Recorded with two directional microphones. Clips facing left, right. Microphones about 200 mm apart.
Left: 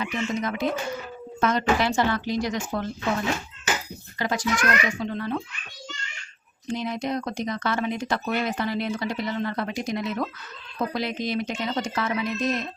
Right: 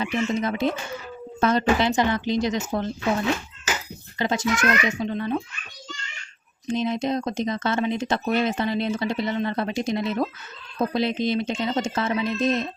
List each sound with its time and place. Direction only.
0.0 s a woman's voice: 30° right (ahead or behind)
1.9 s speech: 20° right (ahead or behind)
4.2 s speech: 25° right (ahead or behind)
6.7 s speech: 25° right (ahead or behind)